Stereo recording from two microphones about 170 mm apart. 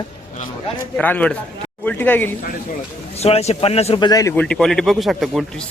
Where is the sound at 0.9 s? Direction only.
10° left (ahead or behind).